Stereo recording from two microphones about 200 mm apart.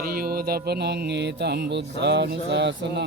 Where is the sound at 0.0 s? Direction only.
50° right (ahead or behind).